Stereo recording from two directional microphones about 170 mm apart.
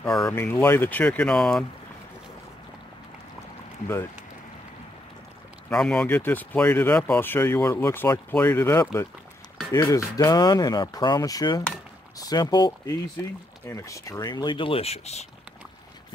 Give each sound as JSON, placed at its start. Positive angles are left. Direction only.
{"t": 0.0, "sound": "speech", "side_deg": 5}
{"t": 0.4, "sound": "speech", "side_deg": 15}
{"t": 5.7, "sound": "speech", "side_deg": 5}